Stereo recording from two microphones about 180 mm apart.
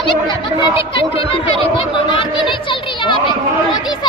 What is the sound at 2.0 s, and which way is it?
Chatter, 25° left (ahead or behind).